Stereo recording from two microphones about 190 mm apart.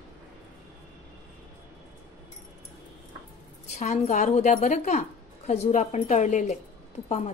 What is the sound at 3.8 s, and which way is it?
A woman's voice, 35° left (ahead or behind).